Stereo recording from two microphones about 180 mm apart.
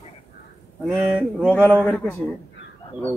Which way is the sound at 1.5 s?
10° left (ahead or behind).